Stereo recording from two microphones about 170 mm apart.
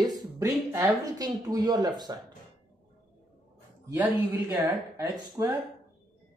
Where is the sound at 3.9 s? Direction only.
20° right (ahead or behind).